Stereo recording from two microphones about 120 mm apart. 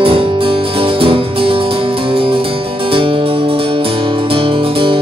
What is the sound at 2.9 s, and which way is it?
Music, 50° right (ahead or behind).